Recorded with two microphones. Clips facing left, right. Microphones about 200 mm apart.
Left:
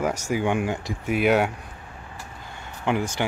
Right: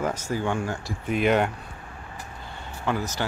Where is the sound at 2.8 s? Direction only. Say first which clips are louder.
Left 3 dB; 15° left (ahead or behind).